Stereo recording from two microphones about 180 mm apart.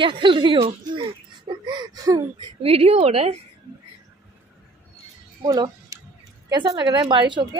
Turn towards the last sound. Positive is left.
turn(degrees=-25)  # may be behind; listen again after turning